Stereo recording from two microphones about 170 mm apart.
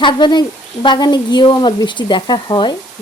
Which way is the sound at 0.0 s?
25° left (ahead or behind).